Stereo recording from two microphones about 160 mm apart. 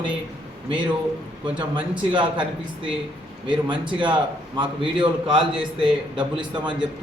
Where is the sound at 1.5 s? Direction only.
30° right (ahead or behind).